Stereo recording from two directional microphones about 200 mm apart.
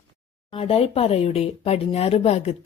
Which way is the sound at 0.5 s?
30° left (ahead or behind).